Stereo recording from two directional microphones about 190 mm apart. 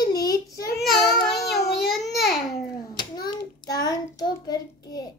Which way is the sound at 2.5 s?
20° left (ahead or behind).